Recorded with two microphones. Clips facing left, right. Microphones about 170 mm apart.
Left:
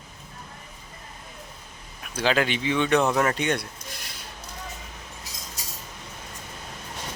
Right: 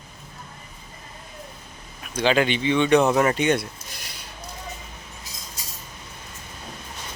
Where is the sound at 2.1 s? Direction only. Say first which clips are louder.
Right 3 dB; centre (ahead or behind).